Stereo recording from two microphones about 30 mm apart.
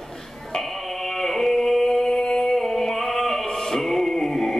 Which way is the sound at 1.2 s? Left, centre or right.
Centre.